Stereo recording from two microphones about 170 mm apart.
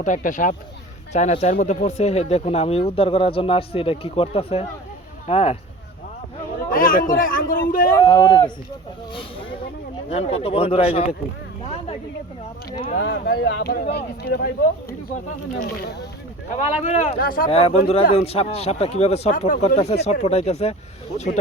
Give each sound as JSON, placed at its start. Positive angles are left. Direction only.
{"t": 0.0, "sound": "speech", "side_deg": 50}
{"t": 6.7, "sound": "a man's voice", "side_deg": 55}
{"t": 8.0, "sound": "speech", "side_deg": 30}
{"t": 10.1, "sound": "speech", "side_deg": 40}
{"t": 11.6, "sound": "a sound", "side_deg": 35}
{"t": 12.9, "sound": "a man's voice", "side_deg": 60}
{"t": 13.9, "sound": "a man's voice", "side_deg": 70}
{"t": 16.5, "sound": "speech", "side_deg": 45}
{"t": 17.2, "sound": "a man's voice", "side_deg": 55}
{"t": 17.5, "sound": "speech", "side_deg": 35}